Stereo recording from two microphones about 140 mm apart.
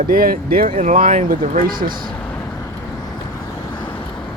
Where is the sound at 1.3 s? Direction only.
90° right.